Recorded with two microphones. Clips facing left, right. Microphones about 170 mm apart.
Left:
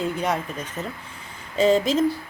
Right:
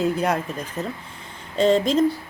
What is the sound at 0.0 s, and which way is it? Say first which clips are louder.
Speech: right 3 dB; 5° right (ahead or behind).